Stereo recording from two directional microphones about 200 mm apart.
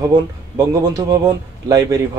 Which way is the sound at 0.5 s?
20° right (ahead or behind).